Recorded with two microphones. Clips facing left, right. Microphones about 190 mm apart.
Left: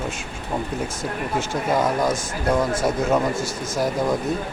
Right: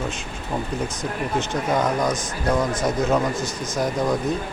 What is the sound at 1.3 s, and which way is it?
Speech, 5° left (ahead or behind).